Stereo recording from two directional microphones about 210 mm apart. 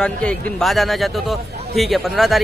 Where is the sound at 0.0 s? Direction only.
5° left (ahead or behind).